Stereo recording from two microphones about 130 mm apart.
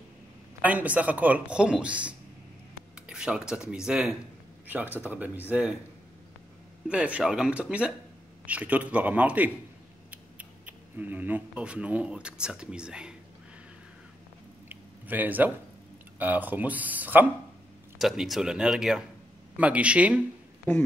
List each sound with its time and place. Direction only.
0.6 s speech: 10° right (ahead or behind)
6.9 s speech: 10° right (ahead or behind)
14.7 s a sound: 15° right (ahead or behind)
16.2 s speech: 15° right (ahead or behind)
17.9 s speech: centre (ahead or behind)